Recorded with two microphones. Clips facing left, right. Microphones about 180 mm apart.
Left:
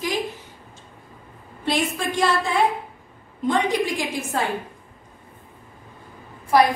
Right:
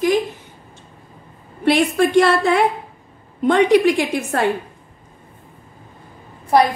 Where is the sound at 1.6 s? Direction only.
65° right (ahead or behind).